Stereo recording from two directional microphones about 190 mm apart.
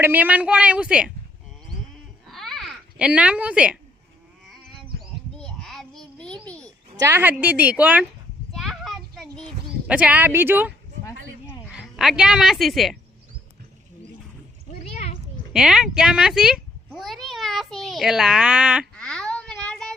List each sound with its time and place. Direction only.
0.0 s a woman's voice: 10° right (ahead or behind)
2.2 s a sound: centre (ahead or behind)
5.4 s babbling: centre (ahead or behind)
7.0 s a woman's voice: 10° right (ahead or behind)
8.5 s a sound: centre (ahead or behind)
11.6 s speech: 5° right (ahead or behind)
14.9 s children playing: 45° left (ahead or behind)
15.5 s cat: 5° right (ahead or behind)